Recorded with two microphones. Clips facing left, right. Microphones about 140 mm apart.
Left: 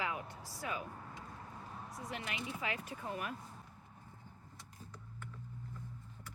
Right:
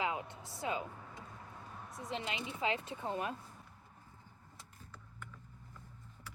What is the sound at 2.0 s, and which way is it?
Speech, 25° right (ahead or behind).